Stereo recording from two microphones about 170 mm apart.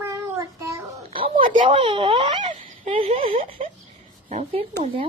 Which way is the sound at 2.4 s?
45° right (ahead or behind).